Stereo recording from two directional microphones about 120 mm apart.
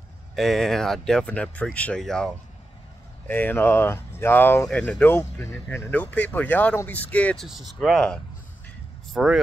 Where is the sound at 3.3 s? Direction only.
15° left (ahead or behind).